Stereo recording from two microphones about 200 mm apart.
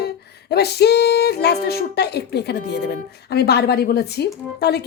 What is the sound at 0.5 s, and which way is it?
Speech, 55° left (ahead or behind).